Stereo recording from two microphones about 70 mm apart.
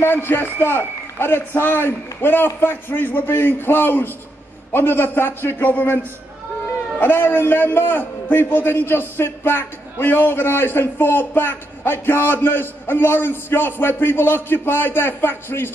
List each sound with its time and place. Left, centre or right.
0.0 s a man's voice: left
7.0 s a man's voice: left